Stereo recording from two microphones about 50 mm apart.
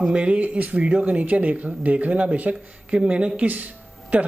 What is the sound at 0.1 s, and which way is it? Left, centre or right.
Speech, right.